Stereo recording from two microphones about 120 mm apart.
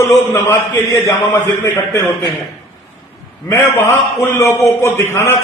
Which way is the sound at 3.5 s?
20° left (ahead or behind).